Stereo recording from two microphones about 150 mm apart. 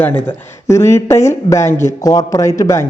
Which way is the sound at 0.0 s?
10° left (ahead or behind).